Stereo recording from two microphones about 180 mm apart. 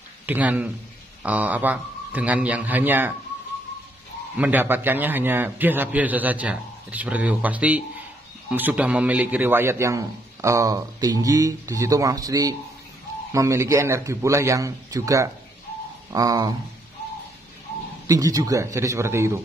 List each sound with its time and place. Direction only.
0.3 s a man's voice: 10° right (ahead or behind)
4.4 s a man's voice: 10° right (ahead or behind)
18.0 s a man's voice: 20° right (ahead or behind)